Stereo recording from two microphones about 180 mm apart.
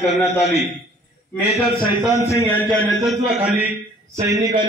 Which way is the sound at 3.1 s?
5° right (ahead or behind).